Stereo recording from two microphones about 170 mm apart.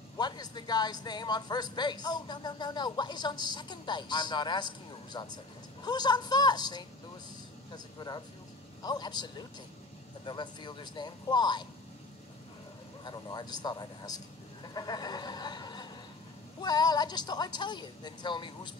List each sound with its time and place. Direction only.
0.2 s a woman's voice: 25° left (ahead or behind)
13.0 s a woman's voice: 25° left (ahead or behind)
14.7 s a sound: 25° left (ahead or behind)
16.6 s a woman's voice: 25° left (ahead or behind)